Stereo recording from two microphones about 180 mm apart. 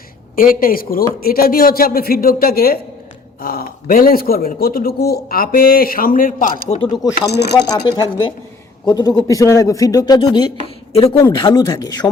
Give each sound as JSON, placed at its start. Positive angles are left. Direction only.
{"t": 0.3, "sound": "a man's voice", "side_deg": 50}
{"t": 7.3, "sound": "a man's voice", "side_deg": 65}
{"t": 7.7, "sound": "a man's voice", "side_deg": 20}
{"t": 10.6, "sound": "a woman's voice", "side_deg": 35}
{"t": 11.2, "sound": "speech", "side_deg": 25}